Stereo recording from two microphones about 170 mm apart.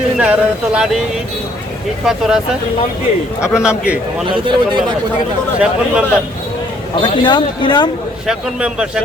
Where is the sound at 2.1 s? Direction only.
5° right (ahead or behind).